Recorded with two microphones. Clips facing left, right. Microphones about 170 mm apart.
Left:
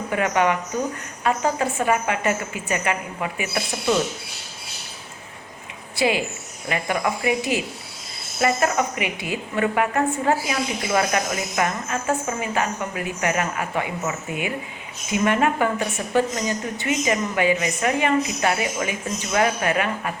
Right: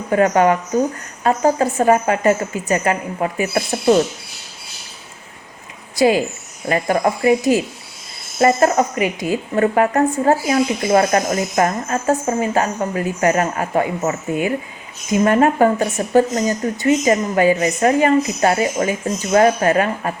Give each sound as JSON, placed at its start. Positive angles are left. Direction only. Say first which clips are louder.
{"t": 0.1, "sound": "speech", "louder": "right 7 dB", "side_deg": -40}
{"t": 6.0, "sound": "speech", "louder": "right 7 dB", "side_deg": -40}